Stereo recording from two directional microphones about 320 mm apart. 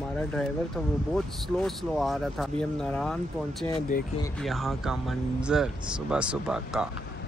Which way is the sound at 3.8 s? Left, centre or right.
Left.